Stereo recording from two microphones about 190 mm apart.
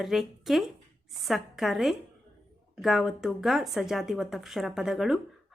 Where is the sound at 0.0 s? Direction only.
Centre (ahead or behind).